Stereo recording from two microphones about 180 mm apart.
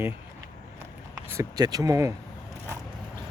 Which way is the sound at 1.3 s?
20° right (ahead or behind).